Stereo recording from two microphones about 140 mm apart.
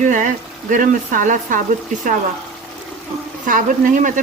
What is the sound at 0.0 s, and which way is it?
Speech, 65° right (ahead or behind).